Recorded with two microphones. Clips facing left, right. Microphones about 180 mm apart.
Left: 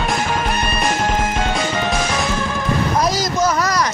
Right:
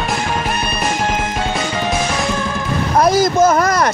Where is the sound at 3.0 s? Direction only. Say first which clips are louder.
Right 6 dB; 55° right (ahead or behind).